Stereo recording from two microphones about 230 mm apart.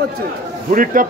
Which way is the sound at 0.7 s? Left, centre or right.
Right.